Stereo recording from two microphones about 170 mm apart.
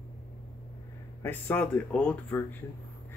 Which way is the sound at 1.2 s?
10° left (ahead or behind).